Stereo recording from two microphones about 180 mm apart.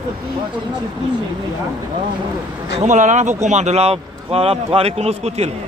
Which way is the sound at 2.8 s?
40° right (ahead or behind).